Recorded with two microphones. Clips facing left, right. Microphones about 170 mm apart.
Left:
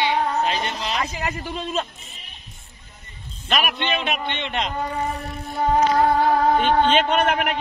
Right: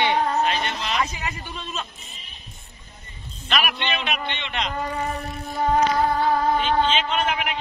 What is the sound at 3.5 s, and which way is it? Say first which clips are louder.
Speech: left 2 dB; 45° left (ahead or behind).